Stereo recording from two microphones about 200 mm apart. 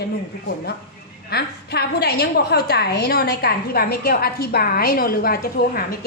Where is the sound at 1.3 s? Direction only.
50° left (ahead or behind).